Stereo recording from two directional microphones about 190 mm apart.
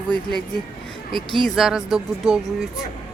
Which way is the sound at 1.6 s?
Centre (ahead or behind).